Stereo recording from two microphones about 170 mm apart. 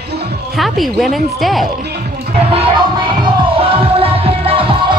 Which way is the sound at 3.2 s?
30° right (ahead or behind).